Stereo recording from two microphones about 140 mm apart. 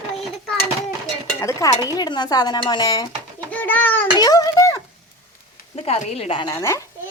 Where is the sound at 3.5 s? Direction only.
10° left (ahead or behind).